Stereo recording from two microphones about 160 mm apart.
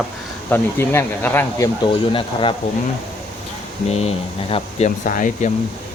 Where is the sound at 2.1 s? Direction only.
35° left (ahead or behind).